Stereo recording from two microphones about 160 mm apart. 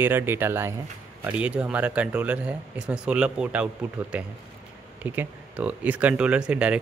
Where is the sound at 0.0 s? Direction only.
15° right (ahead or behind).